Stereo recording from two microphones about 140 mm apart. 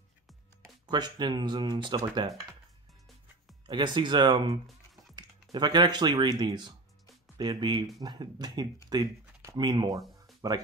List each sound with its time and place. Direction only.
0.8 s speech: 30° right (ahead or behind)
3.6 s speech: 35° right (ahead or behind)